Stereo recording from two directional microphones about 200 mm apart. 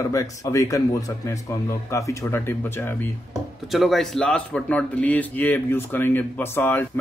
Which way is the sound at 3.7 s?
Centre (ahead or behind).